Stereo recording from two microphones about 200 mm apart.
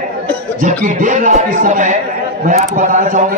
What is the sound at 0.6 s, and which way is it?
Speech, 40° right (ahead or behind).